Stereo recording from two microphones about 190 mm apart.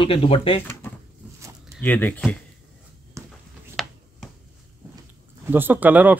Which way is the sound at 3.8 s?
Centre (ahead or behind).